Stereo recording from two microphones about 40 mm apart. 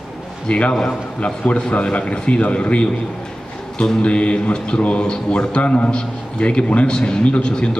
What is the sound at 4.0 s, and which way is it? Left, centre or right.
A man's voice, left.